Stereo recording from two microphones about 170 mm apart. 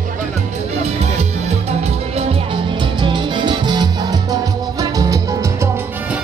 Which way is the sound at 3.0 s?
25° right (ahead or behind).